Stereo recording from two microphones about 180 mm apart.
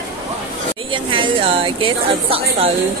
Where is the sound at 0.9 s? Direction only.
30° right (ahead or behind).